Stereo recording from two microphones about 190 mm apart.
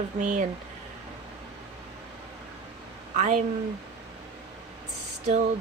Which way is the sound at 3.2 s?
40° right (ahead or behind).